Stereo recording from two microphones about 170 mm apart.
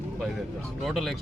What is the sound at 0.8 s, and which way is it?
Speech, centre (ahead or behind).